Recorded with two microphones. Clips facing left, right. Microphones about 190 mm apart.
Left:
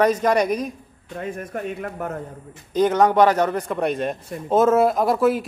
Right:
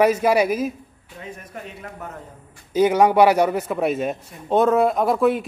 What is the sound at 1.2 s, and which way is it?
Speech, 55° left (ahead or behind).